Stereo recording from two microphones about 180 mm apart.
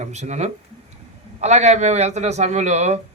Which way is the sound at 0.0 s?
40° right (ahead or behind).